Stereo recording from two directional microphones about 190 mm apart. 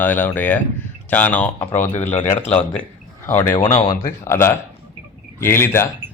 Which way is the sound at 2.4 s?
35° left (ahead or behind).